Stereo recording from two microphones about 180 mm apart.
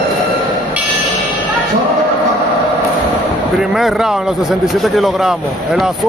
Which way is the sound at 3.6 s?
Centre (ahead or behind).